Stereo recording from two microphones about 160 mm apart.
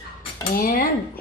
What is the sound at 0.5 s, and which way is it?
Speech, 65° left (ahead or behind).